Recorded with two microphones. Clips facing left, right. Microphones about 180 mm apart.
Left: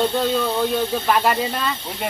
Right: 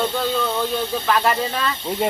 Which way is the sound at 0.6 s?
10° left (ahead or behind).